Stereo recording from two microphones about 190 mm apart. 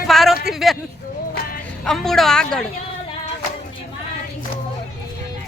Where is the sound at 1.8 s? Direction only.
Centre (ahead or behind).